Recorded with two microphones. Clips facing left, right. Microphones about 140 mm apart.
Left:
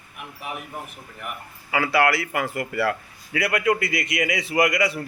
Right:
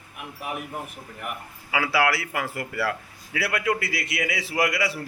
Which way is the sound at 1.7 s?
5° right (ahead or behind).